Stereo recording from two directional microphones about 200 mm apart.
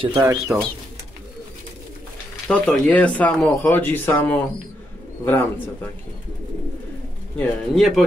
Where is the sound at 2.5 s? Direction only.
5° left (ahead or behind).